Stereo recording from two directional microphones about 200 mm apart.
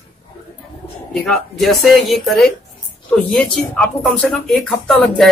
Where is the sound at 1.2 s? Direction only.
Centre (ahead or behind).